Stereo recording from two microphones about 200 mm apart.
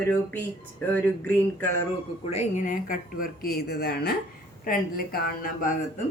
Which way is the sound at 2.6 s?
40° left (ahead or behind).